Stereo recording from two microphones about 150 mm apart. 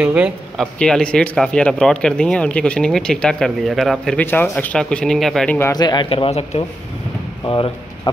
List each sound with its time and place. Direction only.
0.0 s speech: 5° right (ahead or behind)
0.7 s speech: 5° left (ahead or behind)
5.6 s speech: 25° left (ahead or behind); by 6.6 s 40° left (ahead or behind)
7.4 s speech: 30° left (ahead or behind)